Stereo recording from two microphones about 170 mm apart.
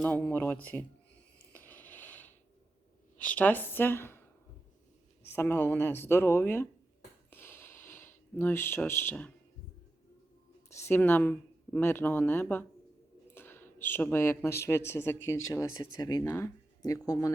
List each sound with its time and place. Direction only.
0.0 s speech: 10° left (ahead or behind)
1.5 s a sound: 10° left (ahead or behind)
3.2 s speech: 10° left (ahead or behind)
5.2 s speech: 15° left (ahead or behind)
7.3 s a sound: 10° left (ahead or behind)
10.7 s speech: 15° left (ahead or behind)